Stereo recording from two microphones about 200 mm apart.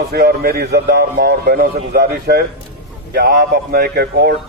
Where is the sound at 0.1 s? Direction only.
50° right (ahead or behind).